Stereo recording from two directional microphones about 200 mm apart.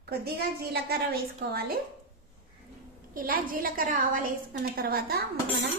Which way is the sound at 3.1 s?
45° right (ahead or behind).